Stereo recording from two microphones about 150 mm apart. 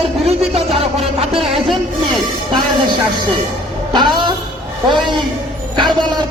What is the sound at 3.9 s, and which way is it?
Speech, 30° right (ahead or behind).